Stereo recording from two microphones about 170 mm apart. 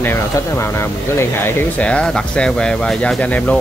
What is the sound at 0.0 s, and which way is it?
Speech, 15° left (ahead or behind).